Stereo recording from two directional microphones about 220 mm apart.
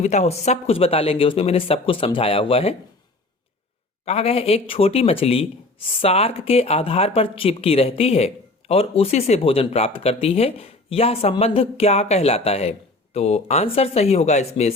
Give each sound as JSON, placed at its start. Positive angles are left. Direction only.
{"t": 0.0, "sound": "speech", "side_deg": 30}
{"t": 4.0, "sound": "speech", "side_deg": 25}